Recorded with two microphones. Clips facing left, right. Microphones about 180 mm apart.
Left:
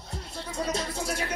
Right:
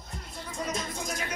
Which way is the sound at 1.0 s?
30° left (ahead or behind).